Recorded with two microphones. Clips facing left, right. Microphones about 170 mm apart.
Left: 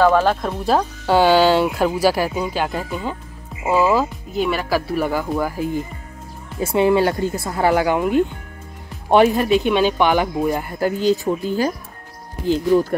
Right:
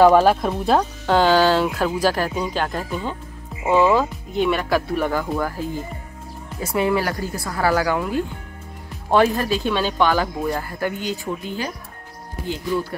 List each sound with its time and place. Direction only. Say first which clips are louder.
0.0 s speech: right 2 dB; 15° right (ahead or behind); by 5.7 s 10° left (ahead or behind)
6.6 s speech: left 5 dB; 25° left (ahead or behind)
10.9 s speech: left 8 dB; 35° left (ahead or behind)